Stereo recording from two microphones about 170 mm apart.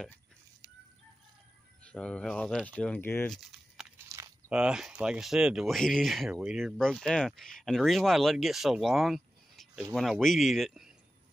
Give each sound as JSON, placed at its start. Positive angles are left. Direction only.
{"t": 1.9, "sound": "speech", "side_deg": 5}
{"t": 4.5, "sound": "speech", "side_deg": -5}